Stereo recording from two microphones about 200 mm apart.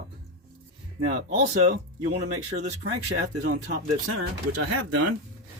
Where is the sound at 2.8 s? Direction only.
85° right.